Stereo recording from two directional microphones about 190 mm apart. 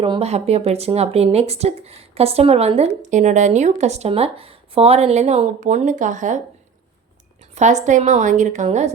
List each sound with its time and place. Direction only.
0.0 s speech: 30° right (ahead or behind)
7.5 s speech: 40° right (ahead or behind)